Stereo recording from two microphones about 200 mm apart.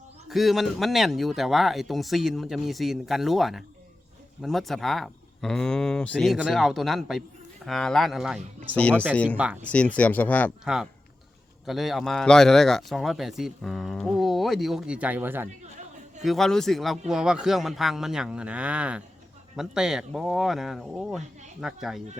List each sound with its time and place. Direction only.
0.3 s speech: centre (ahead or behind)
16.2 s speech: centre (ahead or behind)